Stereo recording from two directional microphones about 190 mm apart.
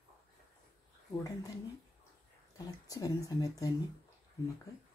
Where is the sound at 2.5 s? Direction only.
20° left (ahead or behind).